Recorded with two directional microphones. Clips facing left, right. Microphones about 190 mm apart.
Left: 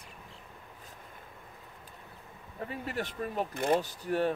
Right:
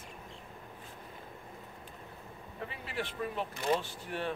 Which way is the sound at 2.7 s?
45° left (ahead or behind).